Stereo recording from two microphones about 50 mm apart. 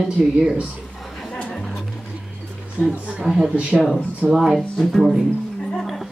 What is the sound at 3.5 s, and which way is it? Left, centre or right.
Speech, right.